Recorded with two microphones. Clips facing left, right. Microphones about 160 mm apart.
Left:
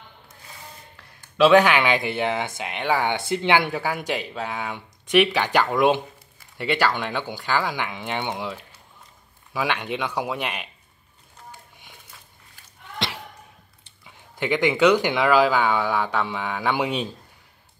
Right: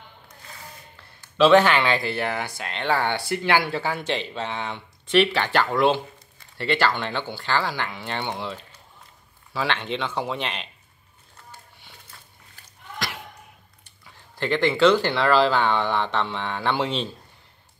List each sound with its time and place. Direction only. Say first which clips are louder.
1.4 s speech: even; 10° left (ahead or behind)
13.0 s slam: left 2 dB; 25° left (ahead or behind)
14.0 s speech: left 1 dB; 15° left (ahead or behind)